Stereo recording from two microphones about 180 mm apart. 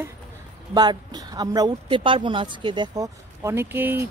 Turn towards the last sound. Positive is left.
turn(degrees=-10)  # may be behind; listen again after turning